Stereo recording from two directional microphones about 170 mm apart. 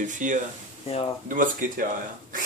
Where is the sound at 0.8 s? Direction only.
35° left (ahead or behind).